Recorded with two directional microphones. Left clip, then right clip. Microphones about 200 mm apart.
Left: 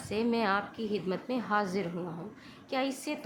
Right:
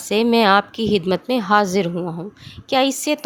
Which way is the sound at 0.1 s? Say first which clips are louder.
Right 15 dB; 50° right (ahead or behind).